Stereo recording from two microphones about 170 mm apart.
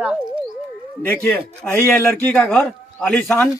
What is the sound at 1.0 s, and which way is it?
A man's voice, 10° left (ahead or behind).